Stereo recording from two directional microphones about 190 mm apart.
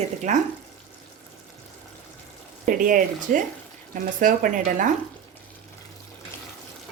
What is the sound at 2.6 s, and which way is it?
Speech, 45° right (ahead or behind).